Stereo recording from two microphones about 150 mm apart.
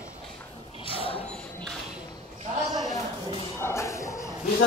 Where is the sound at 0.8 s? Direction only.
35° left (ahead or behind).